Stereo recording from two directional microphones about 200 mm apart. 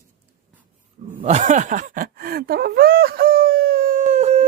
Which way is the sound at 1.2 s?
35° right (ahead or behind).